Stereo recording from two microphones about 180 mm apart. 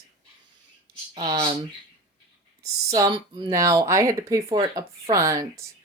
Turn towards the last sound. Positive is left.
turn(degrees=-15)  # may be behind; listen again after turning